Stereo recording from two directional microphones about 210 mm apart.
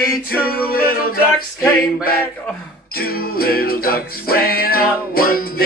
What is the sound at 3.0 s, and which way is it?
Music, 45° left (ahead or behind).